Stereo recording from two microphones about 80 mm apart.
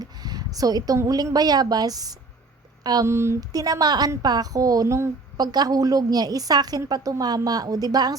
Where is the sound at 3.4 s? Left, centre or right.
Right.